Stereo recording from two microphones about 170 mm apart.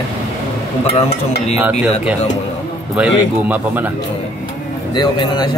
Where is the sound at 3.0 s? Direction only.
10° right (ahead or behind).